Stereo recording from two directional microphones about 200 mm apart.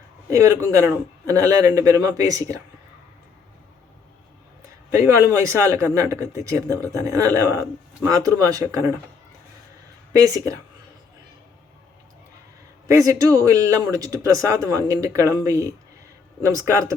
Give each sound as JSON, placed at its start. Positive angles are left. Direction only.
{"t": 0.3, "sound": "speech", "side_deg": -15}
{"t": 4.9, "sound": "speech", "side_deg": -15}
{"t": 10.1, "sound": "speech", "side_deg": -15}
{"t": 12.9, "sound": "speech", "side_deg": -20}